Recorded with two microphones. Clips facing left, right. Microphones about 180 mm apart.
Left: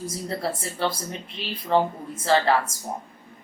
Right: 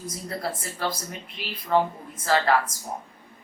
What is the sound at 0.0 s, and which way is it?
Speech, 30° left (ahead or behind).